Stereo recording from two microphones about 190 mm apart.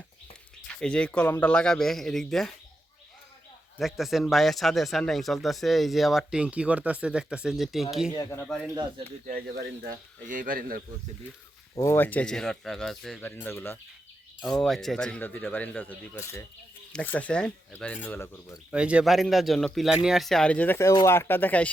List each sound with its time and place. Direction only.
0.7 s speech: 5° left (ahead or behind)
3.8 s speech: centre (ahead or behind)
8.1 s speech: 15° left (ahead or behind)
9.2 s speech: 45° right (ahead or behind)
11.7 s speech: 15° left (ahead or behind)
18.7 s speech: 5° right (ahead or behind)